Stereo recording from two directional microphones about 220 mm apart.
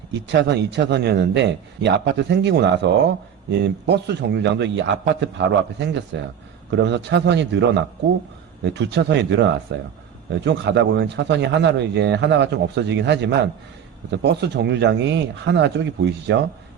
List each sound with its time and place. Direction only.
0.3 s speech: 50° right (ahead or behind)